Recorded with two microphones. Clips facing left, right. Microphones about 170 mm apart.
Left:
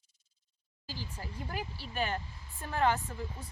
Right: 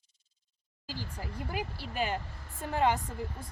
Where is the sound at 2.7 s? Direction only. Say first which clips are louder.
Right 1 dB; 15° right (ahead or behind).